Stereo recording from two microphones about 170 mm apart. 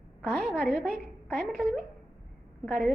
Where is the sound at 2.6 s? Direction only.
Centre (ahead or behind).